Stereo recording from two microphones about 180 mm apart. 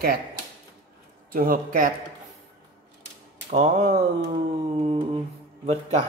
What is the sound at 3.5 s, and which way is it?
Speech, 40° right (ahead or behind).